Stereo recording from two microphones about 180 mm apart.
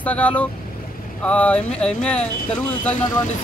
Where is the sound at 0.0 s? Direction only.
5° left (ahead or behind).